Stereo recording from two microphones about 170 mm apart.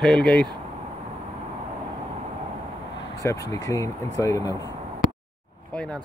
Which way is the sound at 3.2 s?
20° left (ahead or behind).